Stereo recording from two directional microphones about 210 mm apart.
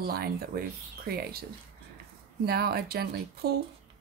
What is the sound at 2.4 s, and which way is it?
Speech, 45° right (ahead or behind).